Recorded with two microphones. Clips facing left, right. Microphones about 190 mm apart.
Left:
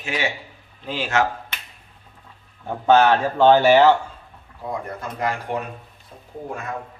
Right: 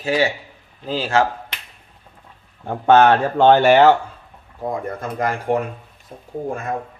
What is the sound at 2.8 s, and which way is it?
Speech, 60° right (ahead or behind).